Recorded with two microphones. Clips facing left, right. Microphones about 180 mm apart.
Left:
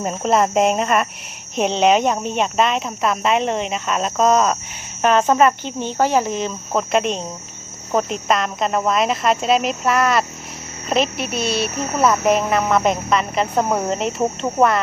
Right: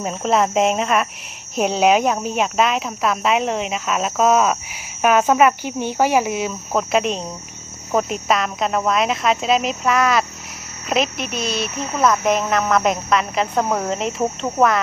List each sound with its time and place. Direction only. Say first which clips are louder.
0.0 s speech: left 1 dB; centre (ahead or behind)
11.3 s speech: left 3 dB; 35° left (ahead or behind)
11.9 s speech: left 1 dB; 5° left (ahead or behind)